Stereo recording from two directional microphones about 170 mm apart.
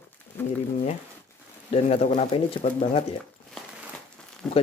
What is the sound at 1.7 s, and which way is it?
Speech, 40° left (ahead or behind).